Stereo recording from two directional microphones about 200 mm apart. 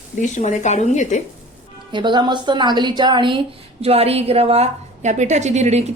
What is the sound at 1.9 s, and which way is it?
A woman's voice, 25° right (ahead or behind).